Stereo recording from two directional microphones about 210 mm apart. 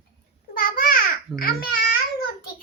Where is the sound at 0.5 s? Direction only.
40° left (ahead or behind).